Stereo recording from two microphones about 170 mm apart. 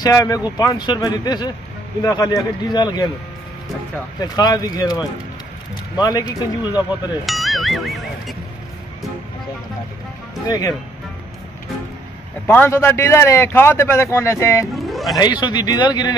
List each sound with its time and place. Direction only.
0.0 s a man's voice: 20° left (ahead or behind)
4.2 s a man's voice: 25° left (ahead or behind)
6.7 s speech: 5° right (ahead or behind)
10.4 s a man's voice: 20° left (ahead or behind)
12.4 s a man's voice: 15° left (ahead or behind)
14.7 s speech: centre (ahead or behind)
15.1 s a man's voice: 25° left (ahead or behind)